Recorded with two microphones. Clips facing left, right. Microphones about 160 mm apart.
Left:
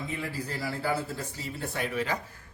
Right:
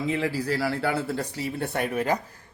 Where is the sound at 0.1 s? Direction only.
90° right; by 2.1 s 50° right (ahead or behind).